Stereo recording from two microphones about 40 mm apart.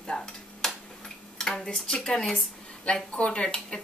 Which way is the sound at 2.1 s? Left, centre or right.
Centre.